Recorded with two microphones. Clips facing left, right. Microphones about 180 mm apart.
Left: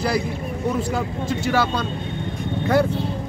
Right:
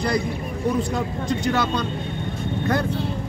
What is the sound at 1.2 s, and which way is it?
Speech, 5° left (ahead or behind).